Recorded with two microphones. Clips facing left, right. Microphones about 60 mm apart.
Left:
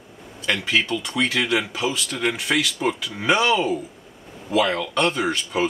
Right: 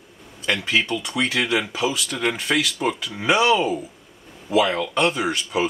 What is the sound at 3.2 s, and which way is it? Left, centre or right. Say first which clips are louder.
Speech: right 1 dB; centre.